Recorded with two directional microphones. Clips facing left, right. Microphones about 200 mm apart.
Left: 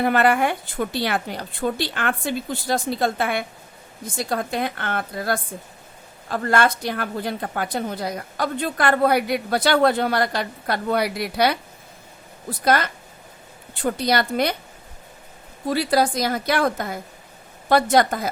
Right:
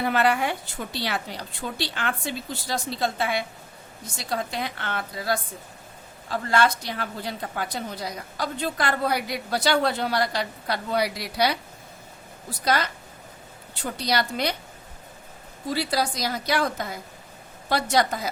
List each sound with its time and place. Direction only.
0.0 s a woman's voice: 55° left (ahead or behind)
15.7 s a woman's voice: 55° left (ahead or behind)